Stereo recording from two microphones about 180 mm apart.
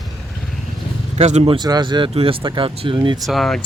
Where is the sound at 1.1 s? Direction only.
35° right (ahead or behind).